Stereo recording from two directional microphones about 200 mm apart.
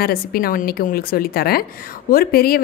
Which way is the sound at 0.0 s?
50° left (ahead or behind).